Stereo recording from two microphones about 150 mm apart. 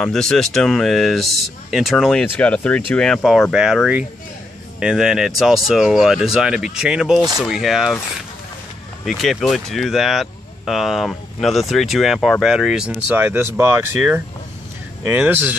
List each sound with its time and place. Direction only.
0.0 s speech: 5° left (ahead or behind)
9.0 s speech: centre (ahead or behind)